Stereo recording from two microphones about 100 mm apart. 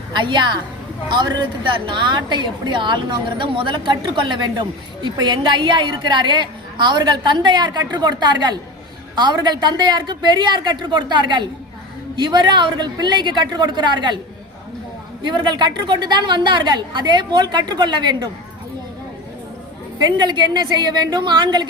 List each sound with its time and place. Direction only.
0.1 s a woman's voice: 50° right (ahead or behind)
15.2 s a woman's voice: 50° right (ahead or behind)
20.0 s a woman's voice: 45° right (ahead or behind)